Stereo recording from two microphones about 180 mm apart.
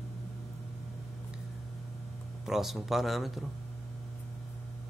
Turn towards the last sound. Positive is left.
turn(degrees=0)  # may be behind; listen again after turning